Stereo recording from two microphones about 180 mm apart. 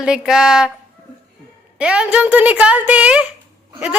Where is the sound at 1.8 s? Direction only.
5° right (ahead or behind).